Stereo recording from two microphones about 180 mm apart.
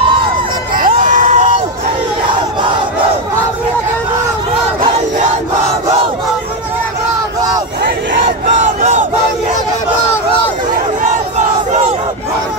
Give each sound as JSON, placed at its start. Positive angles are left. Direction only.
{"t": 0.7, "sound": "crowd", "side_deg": -50}
{"t": 8.5, "sound": "battle cry", "side_deg": -40}